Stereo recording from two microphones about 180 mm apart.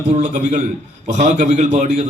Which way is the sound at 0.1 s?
40° right (ahead or behind).